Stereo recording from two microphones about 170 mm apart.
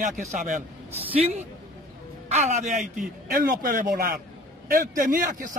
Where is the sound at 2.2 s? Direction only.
40° right (ahead or behind).